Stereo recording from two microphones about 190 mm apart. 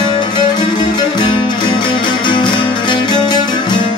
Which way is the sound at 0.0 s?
25° left (ahead or behind).